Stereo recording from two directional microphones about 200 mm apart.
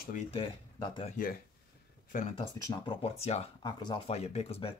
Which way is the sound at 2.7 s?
25° left (ahead or behind).